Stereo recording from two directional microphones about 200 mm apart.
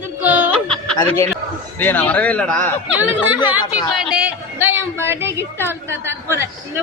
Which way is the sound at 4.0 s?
5° right (ahead or behind).